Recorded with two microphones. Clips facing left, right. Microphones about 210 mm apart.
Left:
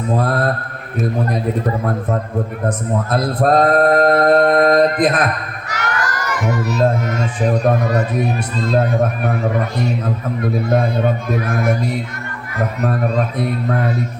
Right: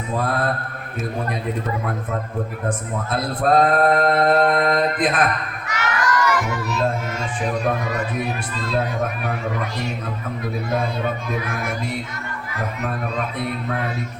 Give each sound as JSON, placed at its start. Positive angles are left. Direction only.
{"t": 0.2, "sound": "mantra", "side_deg": 40}
{"t": 2.6, "sound": "singing", "side_deg": 40}
{"t": 5.6, "sound": "speech", "side_deg": 40}
{"t": 9.2, "sound": "singing", "side_deg": 45}